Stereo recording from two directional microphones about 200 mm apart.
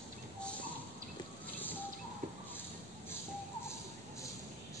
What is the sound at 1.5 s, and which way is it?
Bird, 10° left (ahead or behind).